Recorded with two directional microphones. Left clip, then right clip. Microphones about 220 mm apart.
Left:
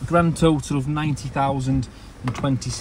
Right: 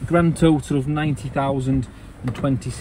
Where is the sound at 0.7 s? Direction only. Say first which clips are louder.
Right 2 dB; 10° left (ahead or behind).